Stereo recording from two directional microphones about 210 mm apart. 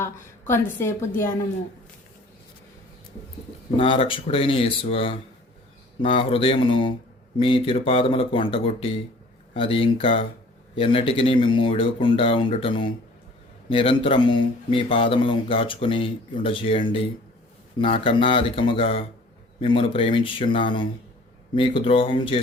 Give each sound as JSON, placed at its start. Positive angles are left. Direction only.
{"t": 0.0, "sound": "a woman's voice", "side_deg": 10}
{"t": 3.8, "sound": "speech", "side_deg": 25}